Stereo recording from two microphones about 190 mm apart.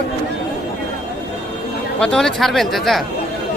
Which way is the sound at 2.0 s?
5° left (ahead or behind).